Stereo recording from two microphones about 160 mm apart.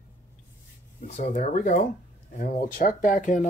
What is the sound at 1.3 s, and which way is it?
Speech, 50° left (ahead or behind).